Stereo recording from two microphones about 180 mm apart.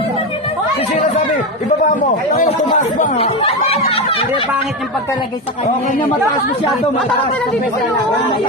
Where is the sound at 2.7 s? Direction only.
45° left (ahead or behind).